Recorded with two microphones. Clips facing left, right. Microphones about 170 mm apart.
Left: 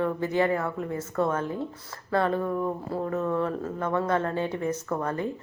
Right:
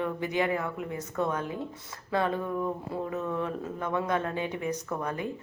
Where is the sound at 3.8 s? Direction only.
15° right (ahead or behind).